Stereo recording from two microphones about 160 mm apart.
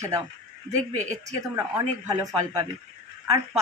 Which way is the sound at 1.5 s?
20° right (ahead or behind).